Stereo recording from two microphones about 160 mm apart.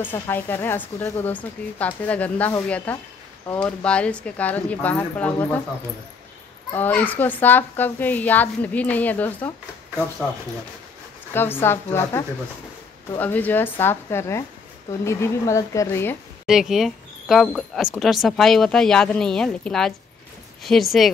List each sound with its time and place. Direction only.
0.0 s speech: 15° left (ahead or behind)
6.7 s speech: 10° left (ahead or behind)
11.3 s speech: 15° left (ahead or behind)
16.4 s speech: centre (ahead or behind)